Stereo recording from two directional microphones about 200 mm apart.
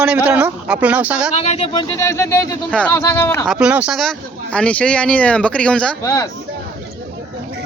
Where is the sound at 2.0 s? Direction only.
15° left (ahead or behind).